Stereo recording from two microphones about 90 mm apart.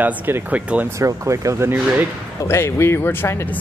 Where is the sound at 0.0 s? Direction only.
15° right (ahead or behind).